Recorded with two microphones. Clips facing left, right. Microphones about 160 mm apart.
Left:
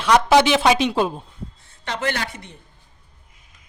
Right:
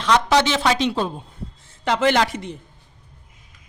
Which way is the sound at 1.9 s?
90° right.